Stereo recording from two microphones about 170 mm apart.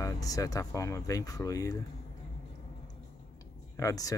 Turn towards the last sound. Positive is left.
turn(degrees=20)  # may be behind; listen again after turning